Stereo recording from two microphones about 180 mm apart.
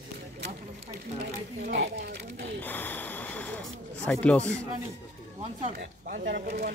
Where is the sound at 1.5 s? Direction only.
60° right (ahead or behind).